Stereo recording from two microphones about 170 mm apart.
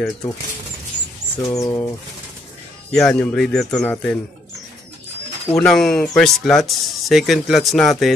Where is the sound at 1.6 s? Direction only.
20° left (ahead or behind).